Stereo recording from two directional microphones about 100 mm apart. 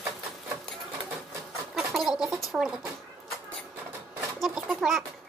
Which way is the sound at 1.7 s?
5° right (ahead or behind).